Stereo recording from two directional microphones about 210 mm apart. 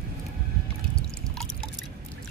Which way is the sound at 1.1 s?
5° left (ahead or behind).